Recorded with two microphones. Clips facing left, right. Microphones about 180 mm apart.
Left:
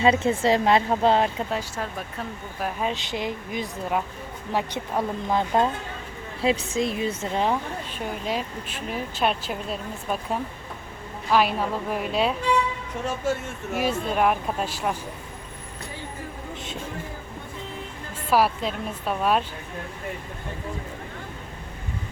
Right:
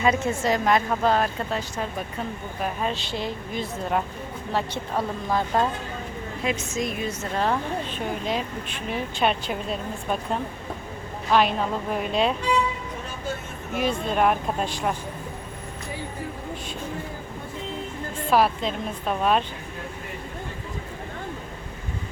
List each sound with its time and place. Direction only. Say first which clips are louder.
0.0 s a woman's voice: left 3 dB; 30° left (ahead or behind)
1.5 s a woman's voice: even; 10° left (ahead or behind)
2.9 s a woman's voice: left 1 dB; 15° left (ahead or behind)
6.4 s a woman's voice: left 4 dB; 30° left (ahead or behind)
7.4 s speech: right 4 dB; 10° left (ahead or behind)
13.7 s speech: even; 5° left (ahead or behind)
18.3 s a woman's voice: even; 5° left (ahead or behind)